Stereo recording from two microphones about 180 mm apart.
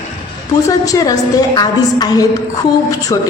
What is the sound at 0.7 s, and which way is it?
A woman's voice, 20° left (ahead or behind).